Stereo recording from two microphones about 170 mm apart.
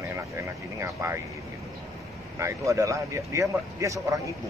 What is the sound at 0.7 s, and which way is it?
Speech, 15° right (ahead or behind).